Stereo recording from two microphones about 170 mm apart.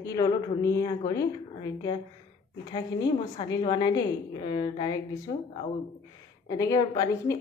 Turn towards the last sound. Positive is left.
turn(degrees=20)  # may be behind; listen again after turning